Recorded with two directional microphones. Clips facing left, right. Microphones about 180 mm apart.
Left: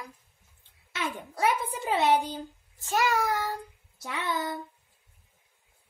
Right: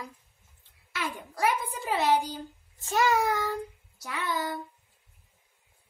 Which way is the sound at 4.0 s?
25° left (ahead or behind).